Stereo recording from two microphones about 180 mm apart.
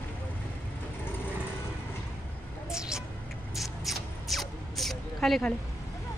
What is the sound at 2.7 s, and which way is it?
Mouse, 5° right (ahead or behind).